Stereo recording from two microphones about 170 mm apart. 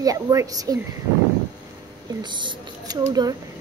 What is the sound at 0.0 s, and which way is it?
Speech, 20° right (ahead or behind).